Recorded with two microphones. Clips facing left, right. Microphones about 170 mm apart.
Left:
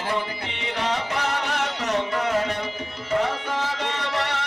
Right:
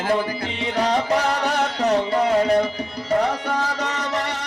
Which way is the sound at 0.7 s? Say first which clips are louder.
Right 6 dB; 35° right (ahead or behind).